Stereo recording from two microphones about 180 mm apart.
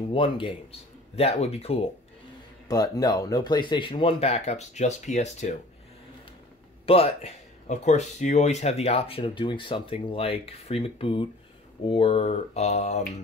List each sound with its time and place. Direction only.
0.1 s speech: 30° left (ahead or behind)
2.7 s speech: 20° left (ahead or behind); by 5.6 s 40° left (ahead or behind)
6.9 s speech: 35° left (ahead or behind)